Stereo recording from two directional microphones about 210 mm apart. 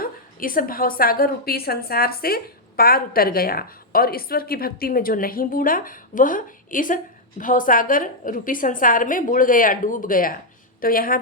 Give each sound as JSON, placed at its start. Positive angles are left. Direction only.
{"t": 0.0, "sound": "a woman's voice", "side_deg": 40}